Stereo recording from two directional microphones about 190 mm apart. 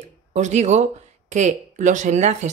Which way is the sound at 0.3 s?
35° right (ahead or behind).